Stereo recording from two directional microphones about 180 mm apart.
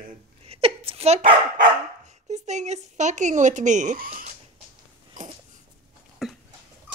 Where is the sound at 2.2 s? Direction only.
40° right (ahead or behind).